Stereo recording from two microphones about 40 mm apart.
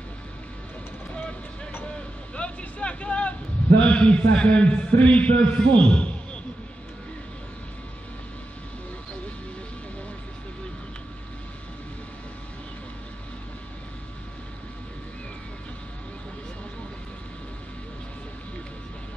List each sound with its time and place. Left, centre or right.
2.0 s vehicle: left
4.9 s a man's voice: left